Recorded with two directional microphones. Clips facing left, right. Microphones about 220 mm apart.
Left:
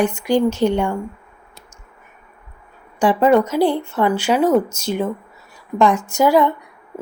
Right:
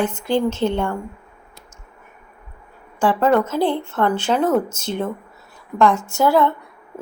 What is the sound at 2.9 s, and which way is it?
Speech, 15° left (ahead or behind).